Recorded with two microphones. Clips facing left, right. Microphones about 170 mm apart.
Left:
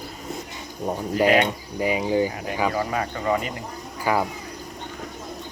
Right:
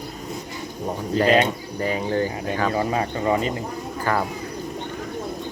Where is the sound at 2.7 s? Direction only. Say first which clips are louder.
Right 3 dB; 25° right (ahead or behind).